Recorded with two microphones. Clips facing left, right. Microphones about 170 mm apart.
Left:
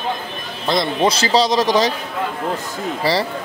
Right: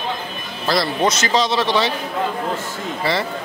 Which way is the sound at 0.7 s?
25° left (ahead or behind).